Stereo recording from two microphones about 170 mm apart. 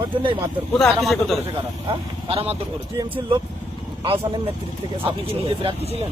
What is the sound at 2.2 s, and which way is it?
Speech, 35° right (ahead or behind).